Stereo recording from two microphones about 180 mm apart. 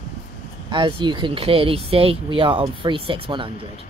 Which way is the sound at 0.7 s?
25° right (ahead or behind).